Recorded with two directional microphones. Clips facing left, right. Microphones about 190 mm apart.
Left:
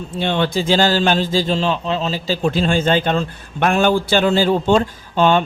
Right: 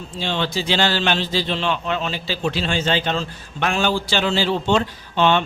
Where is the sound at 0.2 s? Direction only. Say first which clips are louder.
Left 5 dB; 55° left (ahead or behind).